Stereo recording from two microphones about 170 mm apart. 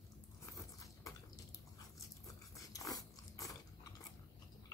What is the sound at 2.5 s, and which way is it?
Dog, 20° left (ahead or behind).